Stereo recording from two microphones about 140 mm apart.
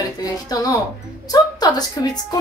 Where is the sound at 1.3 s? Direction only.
30° left (ahead or behind).